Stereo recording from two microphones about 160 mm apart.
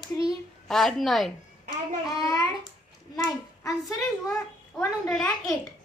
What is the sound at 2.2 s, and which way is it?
A child's voice, 20° left (ahead or behind).